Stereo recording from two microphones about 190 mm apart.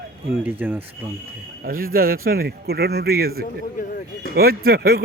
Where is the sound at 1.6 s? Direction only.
50° right (ahead or behind).